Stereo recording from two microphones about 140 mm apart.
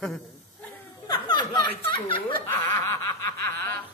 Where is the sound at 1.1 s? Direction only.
30° left (ahead or behind).